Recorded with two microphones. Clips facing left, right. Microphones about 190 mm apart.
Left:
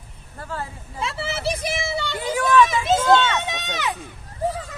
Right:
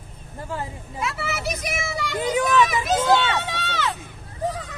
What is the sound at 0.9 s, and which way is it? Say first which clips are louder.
A child's voice: left 1 dB; 30° left (ahead or behind).